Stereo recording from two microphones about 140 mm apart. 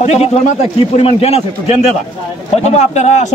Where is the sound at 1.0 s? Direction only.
45° left (ahead or behind).